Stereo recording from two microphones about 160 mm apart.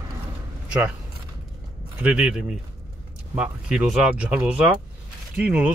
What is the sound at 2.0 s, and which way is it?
Speech, 10° right (ahead or behind).